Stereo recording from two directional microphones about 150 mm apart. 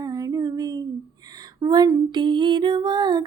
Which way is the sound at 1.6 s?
25° right (ahead or behind).